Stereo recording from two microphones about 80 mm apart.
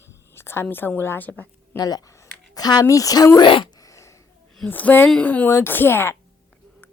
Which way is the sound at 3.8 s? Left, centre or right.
Left.